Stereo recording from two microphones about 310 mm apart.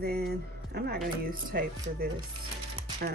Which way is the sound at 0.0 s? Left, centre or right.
Right.